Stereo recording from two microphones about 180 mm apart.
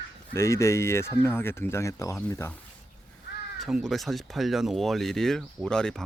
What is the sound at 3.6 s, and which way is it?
Speech, centre (ahead or behind).